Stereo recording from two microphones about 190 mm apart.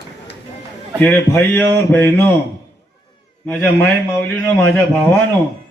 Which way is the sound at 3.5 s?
10° left (ahead or behind).